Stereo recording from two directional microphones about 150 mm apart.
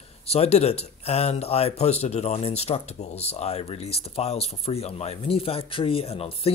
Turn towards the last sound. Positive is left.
turn(degrees=40)  # may be behind; listen again after turning